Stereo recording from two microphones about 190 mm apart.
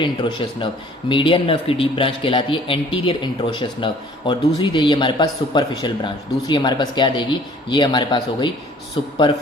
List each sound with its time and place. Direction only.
0.0 s speech: 25° left (ahead or behind)